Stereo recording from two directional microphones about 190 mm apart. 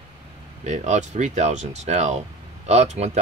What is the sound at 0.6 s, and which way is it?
Speech, 35° right (ahead or behind).